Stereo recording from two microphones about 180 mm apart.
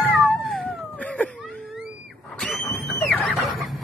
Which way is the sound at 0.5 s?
5° left (ahead or behind).